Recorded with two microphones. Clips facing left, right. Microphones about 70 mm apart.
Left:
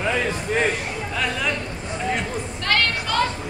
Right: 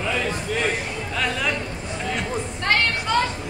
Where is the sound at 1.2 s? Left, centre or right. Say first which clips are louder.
Even; centre.